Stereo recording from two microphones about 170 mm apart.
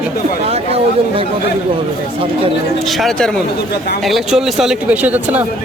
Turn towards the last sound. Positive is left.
turn(degrees=-10)  # may be behind; listen again after turning